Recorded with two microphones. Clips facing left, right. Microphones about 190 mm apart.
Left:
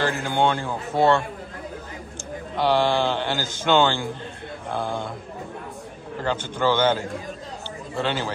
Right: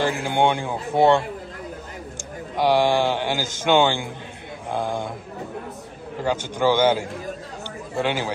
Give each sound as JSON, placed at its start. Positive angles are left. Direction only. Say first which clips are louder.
{"t": 0.0, "sound": "a man's voice", "louder": "right 1 dB", "side_deg": -10}
{"t": 2.5, "sound": "a man's voice", "louder": "right 2 dB", "side_deg": -10}
{"t": 6.2, "sound": "a man's voice", "louder": "right 2 dB", "side_deg": -10}